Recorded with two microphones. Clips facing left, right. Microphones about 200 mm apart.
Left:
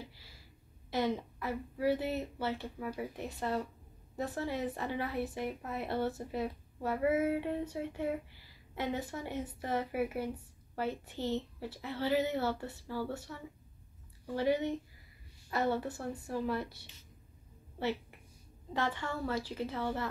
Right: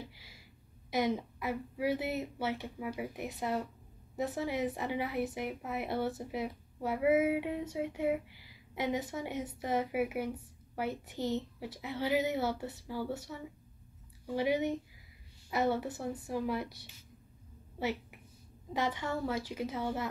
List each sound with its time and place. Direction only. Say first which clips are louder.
0.8 s a woman's voice: right 1 dB; 15° right (ahead or behind)